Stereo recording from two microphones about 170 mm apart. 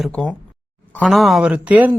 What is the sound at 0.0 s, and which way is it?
Speech, centre (ahead or behind).